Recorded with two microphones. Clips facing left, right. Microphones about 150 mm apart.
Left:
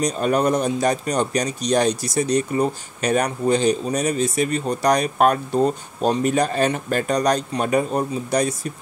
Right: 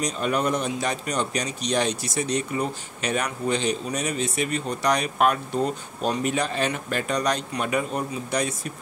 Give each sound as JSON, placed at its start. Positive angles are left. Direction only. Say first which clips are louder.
{"t": 0.0, "sound": "speech", "louder": "left 5 dB", "side_deg": 40}